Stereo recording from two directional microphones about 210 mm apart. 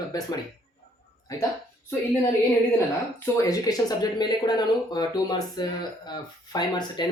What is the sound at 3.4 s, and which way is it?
Speech, 15° left (ahead or behind).